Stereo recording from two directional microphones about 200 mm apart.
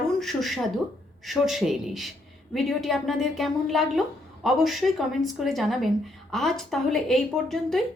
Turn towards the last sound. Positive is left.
turn(degrees=0)  # may be behind; listen again after turning